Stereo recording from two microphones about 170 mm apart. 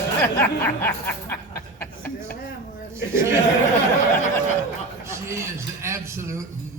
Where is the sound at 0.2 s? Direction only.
10° left (ahead or behind).